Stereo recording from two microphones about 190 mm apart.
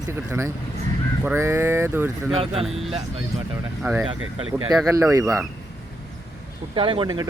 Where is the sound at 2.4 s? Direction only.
30° right (ahead or behind).